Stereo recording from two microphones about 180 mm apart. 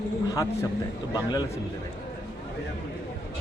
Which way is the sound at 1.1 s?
25° left (ahead or behind).